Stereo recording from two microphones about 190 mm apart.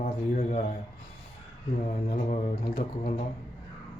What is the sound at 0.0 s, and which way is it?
Speech, 40° left (ahead or behind).